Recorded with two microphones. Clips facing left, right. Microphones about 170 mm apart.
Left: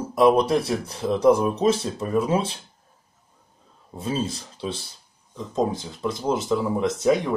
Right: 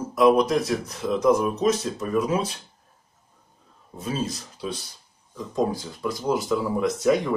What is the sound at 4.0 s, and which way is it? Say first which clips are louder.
Speech: left 2 dB; 30° left (ahead or behind).